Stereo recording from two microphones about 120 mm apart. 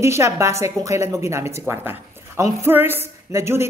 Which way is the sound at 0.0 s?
25° right (ahead or behind).